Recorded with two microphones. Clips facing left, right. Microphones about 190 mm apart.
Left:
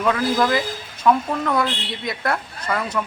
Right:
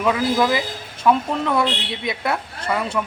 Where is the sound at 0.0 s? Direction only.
10° right (ahead or behind).